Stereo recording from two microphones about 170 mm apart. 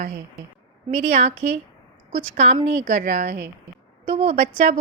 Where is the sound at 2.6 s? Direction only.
45° right (ahead or behind).